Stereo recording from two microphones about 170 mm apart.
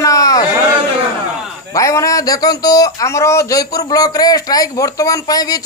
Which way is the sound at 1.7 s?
20° left (ahead or behind).